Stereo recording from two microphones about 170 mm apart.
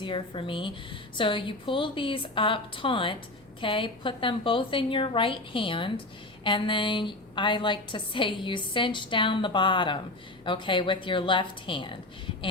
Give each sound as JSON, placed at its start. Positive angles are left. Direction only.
{"t": 0.0, "sound": "a woman's voice", "side_deg": 30}